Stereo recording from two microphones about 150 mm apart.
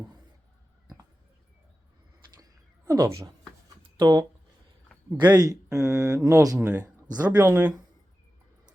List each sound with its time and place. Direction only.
2.3 s a sound: 25° right (ahead or behind)
3.9 s speech: 25° right (ahead or behind)
5.3 s speech: 25° right (ahead or behind)
6.7 s speech: 10° right (ahead or behind)